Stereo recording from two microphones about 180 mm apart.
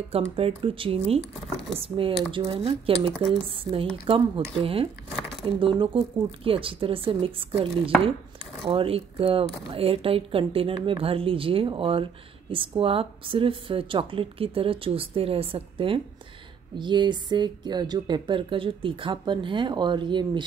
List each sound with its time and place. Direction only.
0.1 s a woman's voice: 30° right (ahead or behind)